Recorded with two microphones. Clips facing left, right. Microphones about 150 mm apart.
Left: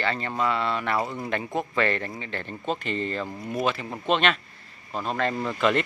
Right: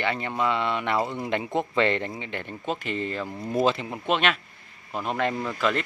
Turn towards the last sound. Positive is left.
turn(degrees=0)  # may be behind; listen again after turning